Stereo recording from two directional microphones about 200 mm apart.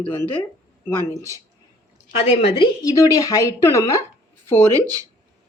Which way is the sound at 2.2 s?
30° left (ahead or behind).